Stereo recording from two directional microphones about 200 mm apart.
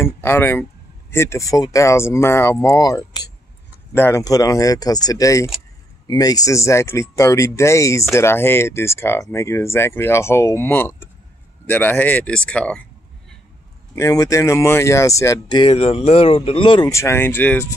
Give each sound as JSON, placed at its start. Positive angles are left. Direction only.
{"t": 0.0, "sound": "speech", "side_deg": 10}
{"t": 13.9, "sound": "speech", "side_deg": 15}